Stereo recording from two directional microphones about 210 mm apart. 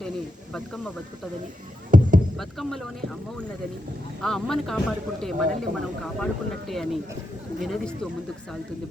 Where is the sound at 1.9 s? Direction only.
40° right (ahead or behind).